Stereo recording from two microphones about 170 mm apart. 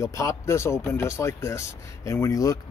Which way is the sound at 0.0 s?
15° left (ahead or behind).